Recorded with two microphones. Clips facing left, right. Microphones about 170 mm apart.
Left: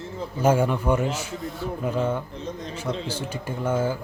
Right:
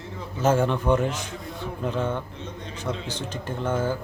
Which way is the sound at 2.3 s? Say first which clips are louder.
Left 4 dB; 35° left (ahead or behind).